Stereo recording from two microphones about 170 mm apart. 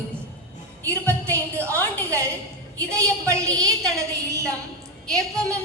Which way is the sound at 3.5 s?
5° left (ahead or behind).